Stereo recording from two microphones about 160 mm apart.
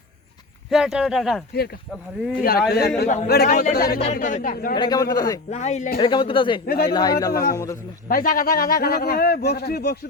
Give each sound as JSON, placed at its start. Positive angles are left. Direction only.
{"t": 0.7, "sound": "speech", "side_deg": -5}
{"t": 2.4, "sound": "a man's voice", "side_deg": 75}
{"t": 4.0, "sound": "speech", "side_deg": 50}
{"t": 4.7, "sound": "speech", "side_deg": 25}
{"t": 5.5, "sound": "speech", "side_deg": 45}
{"t": 6.0, "sound": "speech", "side_deg": 30}
{"t": 6.7, "sound": "a man's voice", "side_deg": 75}
{"t": 6.9, "sound": "speech", "side_deg": 25}
{"t": 8.0, "sound": "a man's voice", "side_deg": 65}